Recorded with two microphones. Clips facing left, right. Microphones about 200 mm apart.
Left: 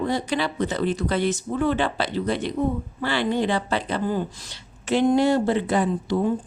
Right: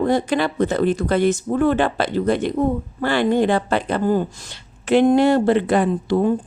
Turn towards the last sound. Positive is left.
turn(degrees=-60)  # may be behind; listen again after turning